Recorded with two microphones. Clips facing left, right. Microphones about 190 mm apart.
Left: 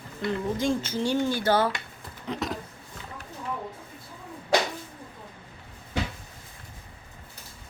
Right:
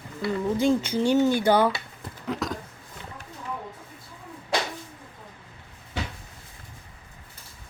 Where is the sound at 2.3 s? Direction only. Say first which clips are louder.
Right 2 dB; centre (ahead or behind).